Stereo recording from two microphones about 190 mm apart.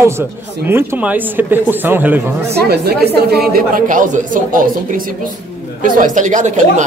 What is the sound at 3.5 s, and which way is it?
Speech, 45° right (ahead or behind).